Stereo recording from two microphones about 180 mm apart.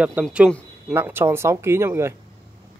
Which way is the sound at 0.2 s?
5° right (ahead or behind).